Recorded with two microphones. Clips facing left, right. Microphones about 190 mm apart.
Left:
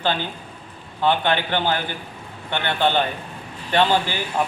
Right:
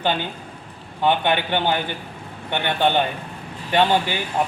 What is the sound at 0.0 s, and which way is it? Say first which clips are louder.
Speech: right 1 dB; 15° right (ahead or behind).